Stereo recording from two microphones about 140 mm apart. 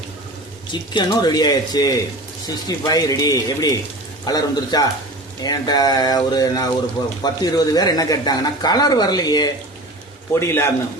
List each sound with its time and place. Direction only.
0.7 s speech: 35° left (ahead or behind)
10.4 s a man's voice: 20° left (ahead or behind)